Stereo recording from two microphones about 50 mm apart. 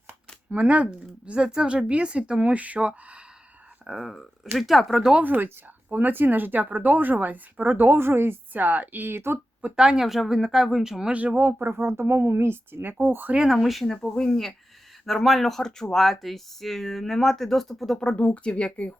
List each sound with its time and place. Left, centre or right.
0.5 s speech: right
3.8 s speech: centre
5.2 s speech: right
9.7 s speech: centre
11.1 s speech: right
11.3 s speech: right
11.7 s speech: right
13.5 s speech: centre
13.8 s speech: centre
18.0 s speech: left